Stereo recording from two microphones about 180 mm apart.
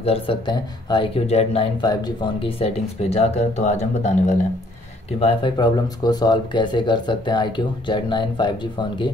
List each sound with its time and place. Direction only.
0.0 s speech: 30° left (ahead or behind)
5.2 s speech: 25° left (ahead or behind)